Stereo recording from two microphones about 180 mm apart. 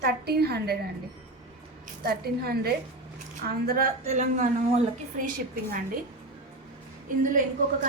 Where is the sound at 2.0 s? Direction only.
60° right (ahead or behind).